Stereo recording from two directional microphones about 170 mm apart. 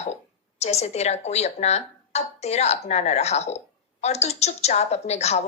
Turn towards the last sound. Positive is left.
turn(degrees=40)  # may be behind; listen again after turning